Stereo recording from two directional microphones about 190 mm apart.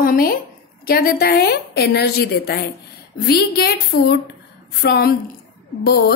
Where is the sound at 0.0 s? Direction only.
50° left (ahead or behind).